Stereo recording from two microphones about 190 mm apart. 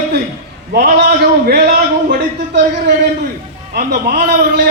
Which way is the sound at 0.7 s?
55° right (ahead or behind).